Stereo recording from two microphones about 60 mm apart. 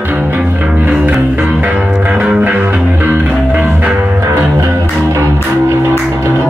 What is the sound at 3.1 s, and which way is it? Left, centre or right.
Music, centre.